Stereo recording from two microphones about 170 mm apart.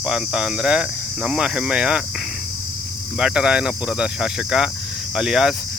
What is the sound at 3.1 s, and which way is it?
Speech, 5° right (ahead or behind).